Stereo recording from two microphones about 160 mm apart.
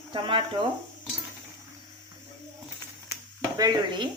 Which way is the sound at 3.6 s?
25° right (ahead or behind).